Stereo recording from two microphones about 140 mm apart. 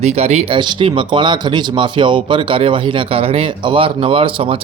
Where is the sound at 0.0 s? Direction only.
50° right (ahead or behind).